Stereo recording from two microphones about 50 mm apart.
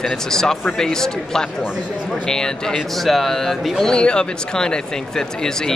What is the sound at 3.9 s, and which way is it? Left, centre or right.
Speech, centre.